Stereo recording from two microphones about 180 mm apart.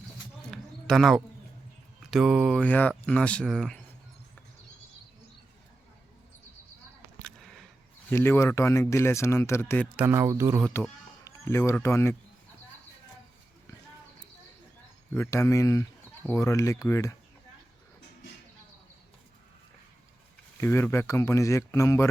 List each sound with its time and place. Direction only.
0.5 s a sound: centre (ahead or behind)
2.0 s speech: centre (ahead or behind)
2.6 s speech: 10° left (ahead or behind)
7.2 s a sound: 5° left (ahead or behind)
8.1 s speech: 15° left (ahead or behind)
9.9 s speech: 10° right (ahead or behind)
11.2 s speech: 15° left (ahead or behind)
15.1 s speech: 15° left (ahead or behind)
20.6 s speech: 15° left (ahead or behind)